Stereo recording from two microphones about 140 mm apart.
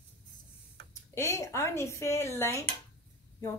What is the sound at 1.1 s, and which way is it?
A woman's voice, 20° left (ahead or behind).